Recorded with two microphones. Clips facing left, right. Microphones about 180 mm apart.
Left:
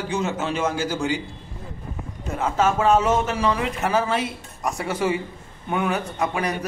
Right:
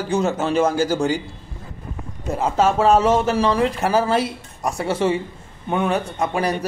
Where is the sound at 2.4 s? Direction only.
30° right (ahead or behind).